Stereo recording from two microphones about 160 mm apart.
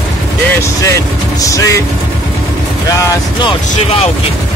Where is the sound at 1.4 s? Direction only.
20° left (ahead or behind).